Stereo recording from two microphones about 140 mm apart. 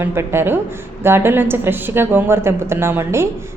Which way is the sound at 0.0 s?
20° right (ahead or behind).